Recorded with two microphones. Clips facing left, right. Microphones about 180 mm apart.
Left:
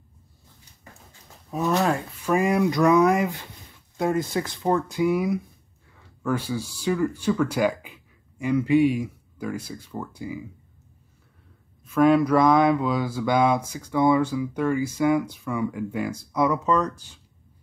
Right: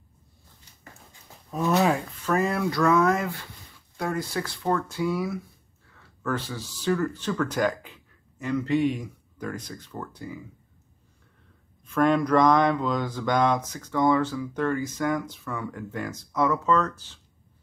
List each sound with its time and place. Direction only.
1.5 s speech: centre (ahead or behind)
2.2 s speech: 15° left (ahead or behind)
11.8 s speech: 5° left (ahead or behind)